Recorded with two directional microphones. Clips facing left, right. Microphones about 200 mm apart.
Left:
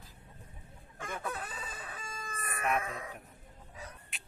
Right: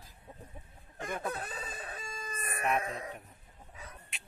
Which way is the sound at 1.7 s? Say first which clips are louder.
Right 2 dB; 40° right (ahead or behind).